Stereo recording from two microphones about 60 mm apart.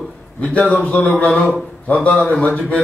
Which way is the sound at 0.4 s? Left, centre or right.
Left.